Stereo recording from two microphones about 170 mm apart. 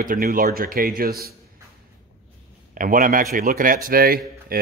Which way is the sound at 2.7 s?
50° right (ahead or behind).